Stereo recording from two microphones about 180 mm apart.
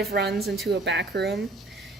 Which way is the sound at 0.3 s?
Centre (ahead or behind).